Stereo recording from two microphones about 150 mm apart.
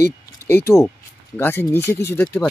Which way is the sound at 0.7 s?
15° left (ahead or behind).